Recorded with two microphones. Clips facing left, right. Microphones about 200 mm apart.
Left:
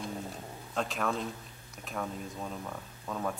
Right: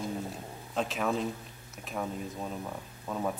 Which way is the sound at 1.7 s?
5° right (ahead or behind).